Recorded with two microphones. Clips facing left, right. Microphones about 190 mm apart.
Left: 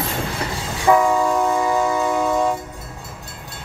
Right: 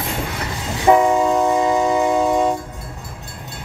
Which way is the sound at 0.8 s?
20° right (ahead or behind).